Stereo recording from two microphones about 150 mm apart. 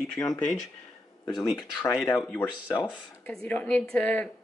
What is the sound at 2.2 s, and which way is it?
A woman's voice, 10° left (ahead or behind).